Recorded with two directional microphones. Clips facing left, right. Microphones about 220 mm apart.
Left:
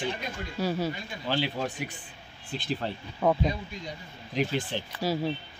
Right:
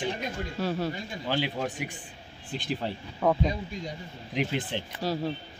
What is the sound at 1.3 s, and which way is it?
Speech, 15° right (ahead or behind).